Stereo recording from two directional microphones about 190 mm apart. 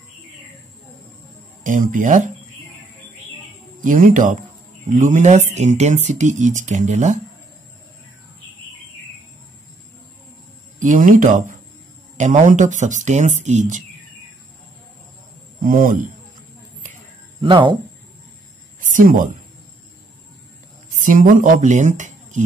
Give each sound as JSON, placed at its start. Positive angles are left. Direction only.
{"t": 1.6, "sound": "speech", "side_deg": -45}
{"t": 3.8, "sound": "speech", "side_deg": -45}
{"t": 10.8, "sound": "speech", "side_deg": -45}
{"t": 15.6, "sound": "speech", "side_deg": -45}
{"t": 17.4, "sound": "speech", "side_deg": -25}
{"t": 18.8, "sound": "a sound", "side_deg": -45}
{"t": 20.9, "sound": "speech", "side_deg": -45}